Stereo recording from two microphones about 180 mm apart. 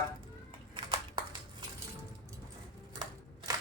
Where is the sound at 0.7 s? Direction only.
25° right (ahead or behind).